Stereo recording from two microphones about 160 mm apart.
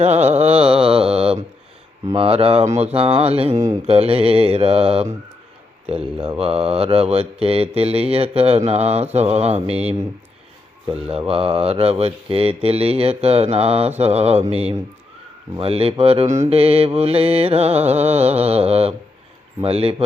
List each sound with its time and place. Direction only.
0.0 s mantra: 40° right (ahead or behind)
2.1 s speech: 35° right (ahead or behind)
3.5 s speech: 20° right (ahead or behind)
3.8 s speech: 35° right (ahead or behind)
6.4 s speech: 35° right (ahead or behind)
10.8 s speech: 40° right (ahead or behind)